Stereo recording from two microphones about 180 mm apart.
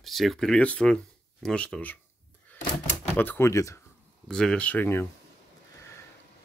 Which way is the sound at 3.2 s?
10° left (ahead or behind).